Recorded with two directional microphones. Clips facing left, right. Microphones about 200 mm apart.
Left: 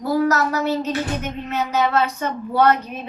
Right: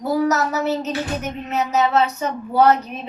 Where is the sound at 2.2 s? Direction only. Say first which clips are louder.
Right 1 dB; 5° right (ahead or behind).